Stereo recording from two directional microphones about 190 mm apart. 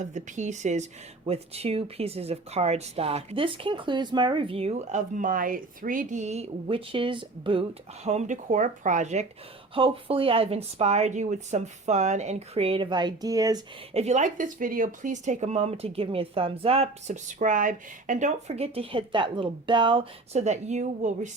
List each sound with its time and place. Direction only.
0.0 s speech: 40° right (ahead or behind); by 13.6 s 20° right (ahead or behind)
13.9 s speech: 35° right (ahead or behind)